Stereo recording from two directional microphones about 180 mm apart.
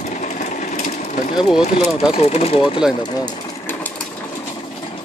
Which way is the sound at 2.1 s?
35° left (ahead or behind).